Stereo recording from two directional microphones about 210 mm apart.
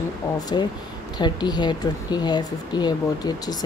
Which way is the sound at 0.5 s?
20° left (ahead or behind).